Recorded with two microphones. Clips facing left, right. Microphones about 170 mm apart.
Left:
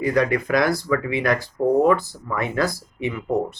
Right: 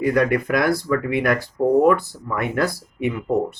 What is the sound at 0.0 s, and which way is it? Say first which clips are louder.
Speech: right 2 dB; 55° right (ahead or behind).